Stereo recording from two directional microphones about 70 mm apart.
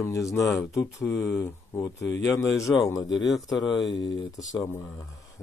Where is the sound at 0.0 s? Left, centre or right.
Left.